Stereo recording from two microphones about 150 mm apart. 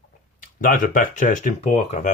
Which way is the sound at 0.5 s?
60° left (ahead or behind).